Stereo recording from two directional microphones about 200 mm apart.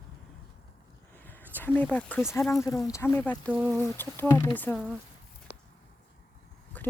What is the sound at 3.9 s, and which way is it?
Speech, 10° left (ahead or behind).